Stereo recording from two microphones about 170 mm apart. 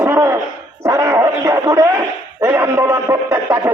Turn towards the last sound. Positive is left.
turn(degrees=-15)  # may be behind; listen again after turning